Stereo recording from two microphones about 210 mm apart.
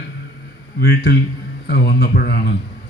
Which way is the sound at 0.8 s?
50° left (ahead or behind).